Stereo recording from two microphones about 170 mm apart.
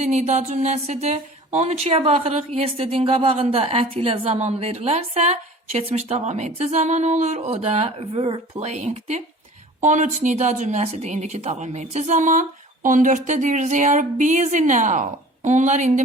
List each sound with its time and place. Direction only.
0.0 s speech: 40° right (ahead or behind)